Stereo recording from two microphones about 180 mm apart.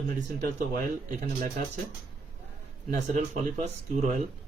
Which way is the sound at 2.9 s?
45° right (ahead or behind).